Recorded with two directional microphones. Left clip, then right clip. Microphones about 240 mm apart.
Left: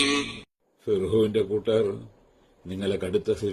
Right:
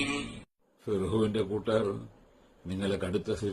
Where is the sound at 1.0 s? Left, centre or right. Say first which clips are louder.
Left 7 dB; centre.